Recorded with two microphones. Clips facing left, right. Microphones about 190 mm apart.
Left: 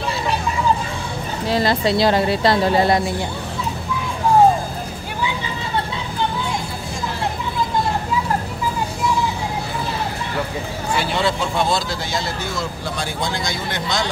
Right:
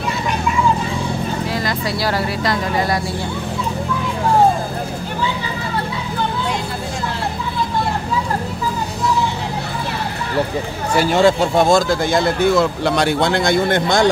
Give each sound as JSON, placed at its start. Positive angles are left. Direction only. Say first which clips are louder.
{"t": 1.5, "sound": "speech", "louder": "left 4 dB", "side_deg": 30}
{"t": 11.0, "sound": "speech", "louder": "right 8 dB", "side_deg": -45}